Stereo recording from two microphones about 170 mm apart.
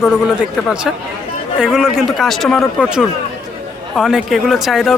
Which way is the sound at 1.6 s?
Centre (ahead or behind).